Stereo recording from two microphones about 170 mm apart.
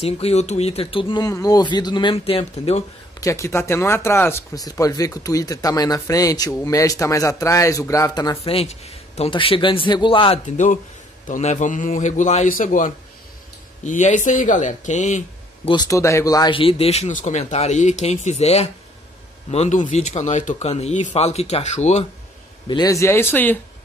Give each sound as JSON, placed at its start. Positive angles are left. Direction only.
{"t": 0.0, "sound": "speech", "side_deg": 40}
{"t": 3.2, "sound": "speech", "side_deg": 20}
{"t": 8.5, "sound": "speech", "side_deg": 35}
{"t": 10.4, "sound": "speech", "side_deg": 45}
{"t": 15.7, "sound": "speech", "side_deg": 20}
{"t": 22.7, "sound": "speech", "side_deg": 20}